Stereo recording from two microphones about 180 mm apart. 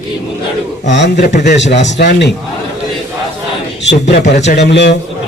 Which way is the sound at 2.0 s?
70° left (ahead or behind).